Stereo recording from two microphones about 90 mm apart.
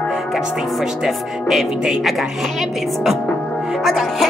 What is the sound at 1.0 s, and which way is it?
Speech, 5° right (ahead or behind).